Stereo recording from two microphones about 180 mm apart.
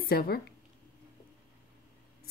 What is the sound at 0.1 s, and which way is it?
Speech, 60° left (ahead or behind).